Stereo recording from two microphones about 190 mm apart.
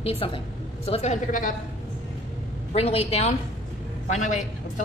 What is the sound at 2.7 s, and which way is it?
A woman's voice, 30° left (ahead or behind).